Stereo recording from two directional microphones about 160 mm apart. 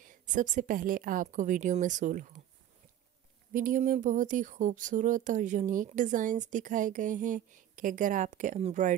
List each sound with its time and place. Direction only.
0.0 s speech: 55° right (ahead or behind)
3.5 s speech: 55° right (ahead or behind)